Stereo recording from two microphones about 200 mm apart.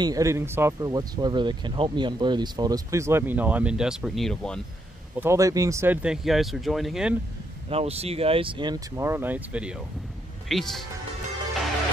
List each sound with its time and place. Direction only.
0.0 s speech: 15° right (ahead or behind); by 4.6 s centre (ahead or behind)
5.1 s speech: 10° right (ahead or behind)
7.7 s speech: 30° right (ahead or behind); by 10.9 s centre (ahead or behind)